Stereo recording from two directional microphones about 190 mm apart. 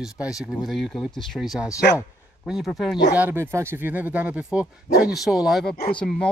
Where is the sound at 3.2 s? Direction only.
10° right (ahead or behind); by 6.3 s 5° left (ahead or behind).